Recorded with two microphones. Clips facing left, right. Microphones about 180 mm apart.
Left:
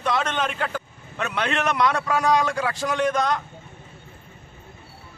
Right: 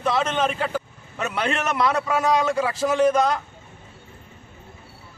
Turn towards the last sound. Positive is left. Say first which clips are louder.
# right 4 dB
turn(degrees=-5)  # may be behind; listen again after turning